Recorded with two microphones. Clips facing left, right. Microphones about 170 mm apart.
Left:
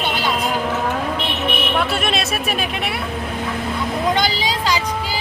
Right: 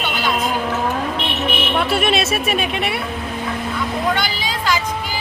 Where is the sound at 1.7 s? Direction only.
5° right (ahead or behind).